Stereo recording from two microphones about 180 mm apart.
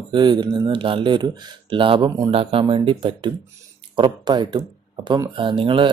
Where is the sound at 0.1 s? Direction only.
25° right (ahead or behind).